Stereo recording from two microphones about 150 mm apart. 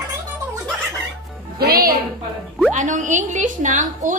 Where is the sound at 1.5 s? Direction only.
90° right.